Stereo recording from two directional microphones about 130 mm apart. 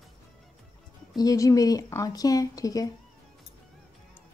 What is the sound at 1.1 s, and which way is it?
Speech, 25° left (ahead or behind).